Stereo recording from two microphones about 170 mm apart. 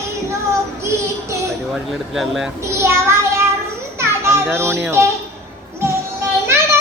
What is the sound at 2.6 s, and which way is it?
Child singing, 15° right (ahead or behind).